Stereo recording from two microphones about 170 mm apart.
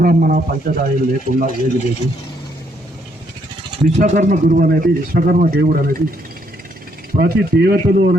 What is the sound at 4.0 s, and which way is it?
A man's voice, 50° right (ahead or behind).